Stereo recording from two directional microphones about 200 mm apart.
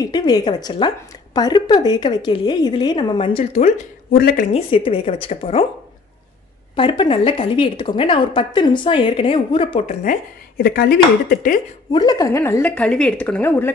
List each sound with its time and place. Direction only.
0.0 s a woman's voice: 20° left (ahead or behind)
4.1 s speech: 45° left (ahead or behind)
4.5 s a woman's voice: 30° left (ahead or behind)
6.7 s a woman's voice: 25° left (ahead or behind)
10.6 s speech: 50° left (ahead or behind)
11.9 s a woman's voice: 20° left (ahead or behind)